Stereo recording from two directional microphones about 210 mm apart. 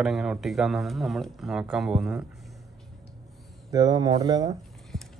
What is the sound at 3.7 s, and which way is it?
Speech, 15° right (ahead or behind).